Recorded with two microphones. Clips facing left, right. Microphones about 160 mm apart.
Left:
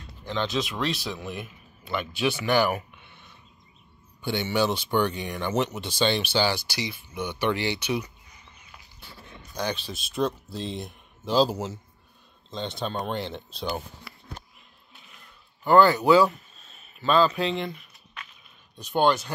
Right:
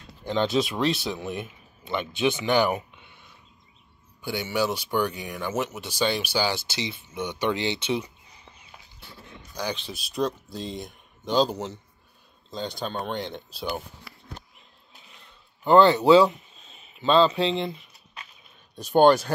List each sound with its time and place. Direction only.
0.3 s speech: 30° right (ahead or behind); by 6.5 s 10° right (ahead or behind)
6.5 s speech: 25° right (ahead or behind)
9.9 s speech: centre (ahead or behind)
15.1 s a sound: 25° right (ahead or behind)
18.9 s speech: 45° right (ahead or behind)